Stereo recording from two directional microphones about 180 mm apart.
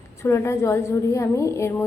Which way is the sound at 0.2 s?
15° left (ahead or behind).